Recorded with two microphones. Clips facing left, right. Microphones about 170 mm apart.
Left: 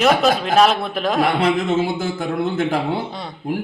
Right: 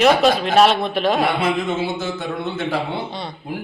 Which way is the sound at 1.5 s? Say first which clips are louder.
Left 3 dB; 50° left (ahead or behind).